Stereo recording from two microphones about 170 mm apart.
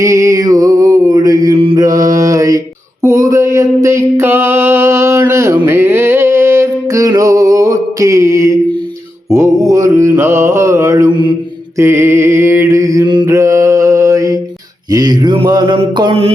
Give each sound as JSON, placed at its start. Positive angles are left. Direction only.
{"t": 0.0, "sound": "music", "side_deg": -20}
{"t": 1.5, "sound": "mantra", "side_deg": -30}
{"t": 1.8, "sound": "mantra", "side_deg": -20}
{"t": 3.0, "sound": "a sound", "side_deg": -20}
{"t": 9.3, "sound": "mantra", "side_deg": -15}